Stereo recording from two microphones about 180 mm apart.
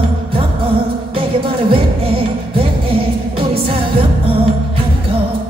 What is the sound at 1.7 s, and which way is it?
Music, 30° right (ahead or behind).